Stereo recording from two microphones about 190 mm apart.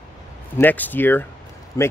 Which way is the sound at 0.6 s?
10° left (ahead or behind).